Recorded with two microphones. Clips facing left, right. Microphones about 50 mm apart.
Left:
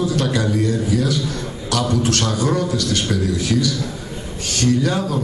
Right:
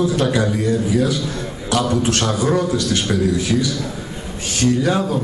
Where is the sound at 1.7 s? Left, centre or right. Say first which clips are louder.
Right 1 dB; right.